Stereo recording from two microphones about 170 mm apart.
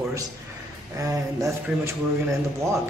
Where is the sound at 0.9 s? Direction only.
20° right (ahead or behind).